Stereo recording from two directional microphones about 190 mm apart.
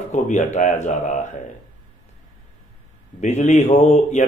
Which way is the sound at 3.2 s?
40° left (ahead or behind).